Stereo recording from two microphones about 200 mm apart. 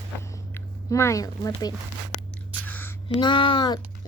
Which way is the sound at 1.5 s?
20° left (ahead or behind).